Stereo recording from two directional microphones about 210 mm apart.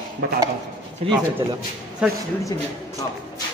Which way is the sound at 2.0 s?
5° right (ahead or behind).